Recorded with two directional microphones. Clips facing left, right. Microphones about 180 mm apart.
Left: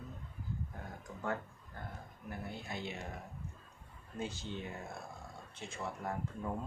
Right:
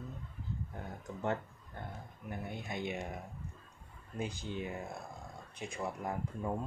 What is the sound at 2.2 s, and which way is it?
Speech, 20° right (ahead or behind).